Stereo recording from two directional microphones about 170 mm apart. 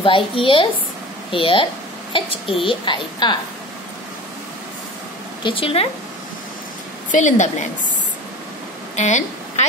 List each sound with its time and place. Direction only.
0.0 s speech: 30° left (ahead or behind)
5.4 s speech: 30° left (ahead or behind)
7.1 s a woman's voice: 45° left (ahead or behind)
8.9 s a sound: 45° left (ahead or behind)